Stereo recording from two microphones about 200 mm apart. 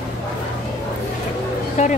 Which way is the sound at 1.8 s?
35° left (ahead or behind).